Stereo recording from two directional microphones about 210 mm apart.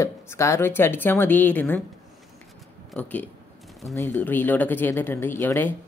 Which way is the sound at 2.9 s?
5° left (ahead or behind).